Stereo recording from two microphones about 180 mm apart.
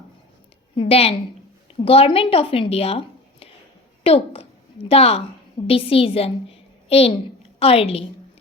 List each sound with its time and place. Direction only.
0.8 s a woman's voice: 35° left (ahead or behind)
4.0 s a woman's voice: 30° left (ahead or behind)